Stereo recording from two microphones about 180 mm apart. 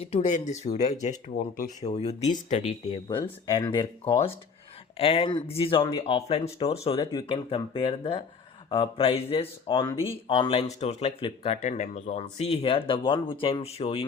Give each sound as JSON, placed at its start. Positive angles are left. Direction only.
{"t": 0.0, "sound": "speech", "side_deg": 35}